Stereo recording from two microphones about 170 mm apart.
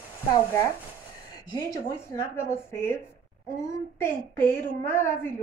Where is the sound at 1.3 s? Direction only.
20° left (ahead or behind).